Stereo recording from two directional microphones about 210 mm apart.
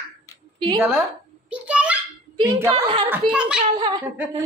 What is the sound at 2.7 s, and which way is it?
Speech, 25° right (ahead or behind).